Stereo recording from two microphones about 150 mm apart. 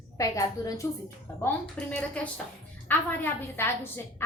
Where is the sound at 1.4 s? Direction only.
10° left (ahead or behind).